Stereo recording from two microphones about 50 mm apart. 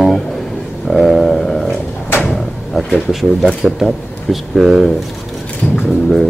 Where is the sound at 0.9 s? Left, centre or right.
Centre.